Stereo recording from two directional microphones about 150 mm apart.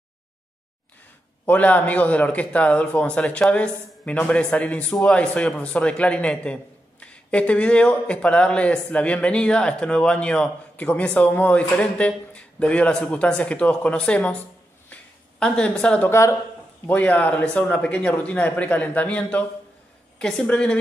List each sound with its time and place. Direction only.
1.4 s a man's voice: 10° left (ahead or behind)
14.9 s a sound: 5° left (ahead or behind)
16.1 s a man's voice: 20° left (ahead or behind)